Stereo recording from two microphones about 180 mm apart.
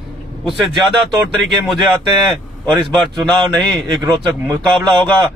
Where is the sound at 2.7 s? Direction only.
25° right (ahead or behind).